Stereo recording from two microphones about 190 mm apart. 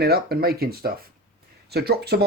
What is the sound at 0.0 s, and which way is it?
Speech, 55° right (ahead or behind).